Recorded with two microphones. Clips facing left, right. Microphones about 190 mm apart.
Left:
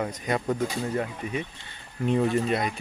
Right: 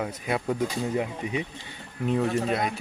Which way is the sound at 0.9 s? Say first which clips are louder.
Right 1 dB; 15° right (ahead or behind).